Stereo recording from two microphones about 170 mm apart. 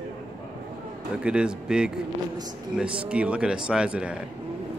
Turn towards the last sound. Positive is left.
turn(degrees=-5)  # may be behind; listen again after turning